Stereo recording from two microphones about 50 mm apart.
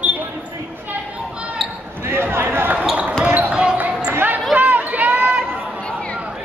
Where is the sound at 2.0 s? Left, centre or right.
Right.